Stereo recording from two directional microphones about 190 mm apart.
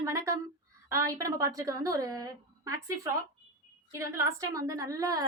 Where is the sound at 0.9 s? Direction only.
15° right (ahead or behind).